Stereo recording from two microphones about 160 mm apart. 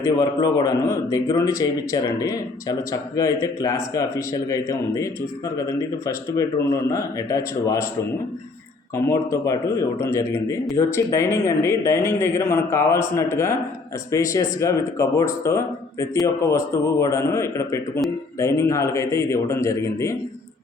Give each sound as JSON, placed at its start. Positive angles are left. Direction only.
{"t": 0.0, "sound": "a man's voice", "side_deg": 20}
{"t": 9.0, "sound": "a man's voice", "side_deg": 20}